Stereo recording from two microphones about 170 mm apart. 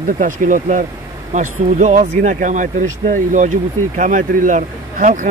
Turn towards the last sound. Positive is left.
turn(degrees=-45)  # may be behind; listen again after turning